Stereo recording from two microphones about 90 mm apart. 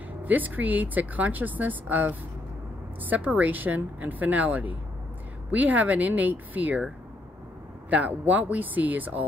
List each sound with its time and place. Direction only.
0.2 s a woman's voice: 20° right (ahead or behind)
7.9 s speech: 15° right (ahead or behind)